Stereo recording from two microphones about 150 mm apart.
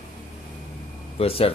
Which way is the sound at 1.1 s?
40° left (ahead or behind).